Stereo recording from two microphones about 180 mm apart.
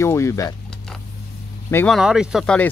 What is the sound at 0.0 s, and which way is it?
Speech, 15° left (ahead or behind).